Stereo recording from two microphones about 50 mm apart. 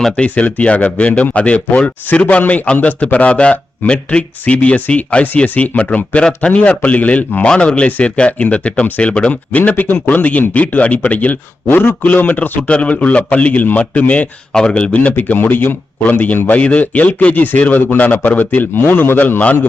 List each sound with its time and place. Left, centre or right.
0.2 s speech: left
7.4 s speech: centre
11.7 s a man's voice: left
12.0 s speech: left
14.5 s speech: centre; by 19.6 s left